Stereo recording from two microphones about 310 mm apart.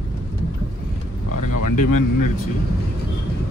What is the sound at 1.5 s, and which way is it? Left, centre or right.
Speech, left.